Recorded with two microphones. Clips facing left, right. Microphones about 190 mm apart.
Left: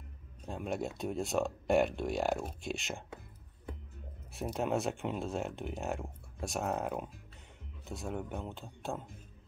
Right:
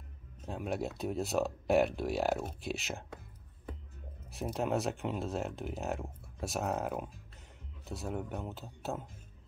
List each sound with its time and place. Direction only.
0.5 s speech: centre (ahead or behind)
4.3 s speech: centre (ahead or behind)